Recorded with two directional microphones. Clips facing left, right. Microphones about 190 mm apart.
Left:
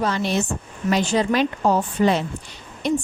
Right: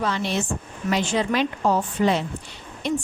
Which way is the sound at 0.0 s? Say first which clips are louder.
Left 3 dB; 40° left (ahead or behind).